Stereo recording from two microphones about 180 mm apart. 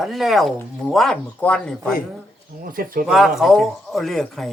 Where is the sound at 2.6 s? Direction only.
50° right (ahead or behind).